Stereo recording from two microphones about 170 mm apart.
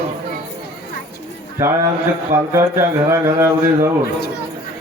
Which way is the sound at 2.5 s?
15° right (ahead or behind).